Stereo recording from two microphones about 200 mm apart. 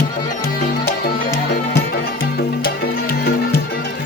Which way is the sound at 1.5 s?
50° left (ahead or behind).